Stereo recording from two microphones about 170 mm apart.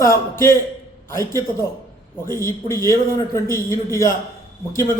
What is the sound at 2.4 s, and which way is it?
A man's voice, 15° left (ahead or behind).